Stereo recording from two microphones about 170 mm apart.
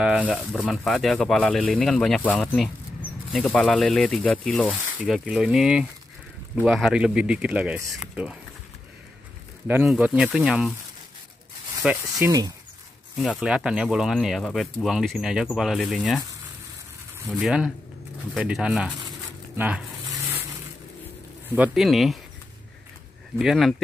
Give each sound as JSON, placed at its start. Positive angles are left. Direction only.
{"t": 0.0, "sound": "speech", "side_deg": -5}
{"t": 9.8, "sound": "speech", "side_deg": -5}
{"t": 11.8, "sound": "speech", "side_deg": -5}
{"t": 12.2, "sound": "speech", "side_deg": -20}
{"t": 13.2, "sound": "speech", "side_deg": 0}
{"t": 17.3, "sound": "speech", "side_deg": -5}
{"t": 21.5, "sound": "speech", "side_deg": 0}
{"t": 23.3, "sound": "speech", "side_deg": 0}